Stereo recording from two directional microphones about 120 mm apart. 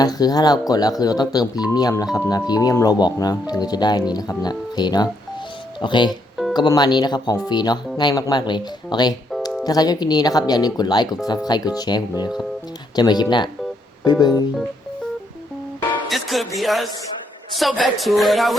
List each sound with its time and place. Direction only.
0.0 s speech: 35° left (ahead or behind)
6.1 s music: centre (ahead or behind)
6.5 s speech: 35° left (ahead or behind)
16.0 s music: centre (ahead or behind)
16.6 s speech: centre (ahead or behind)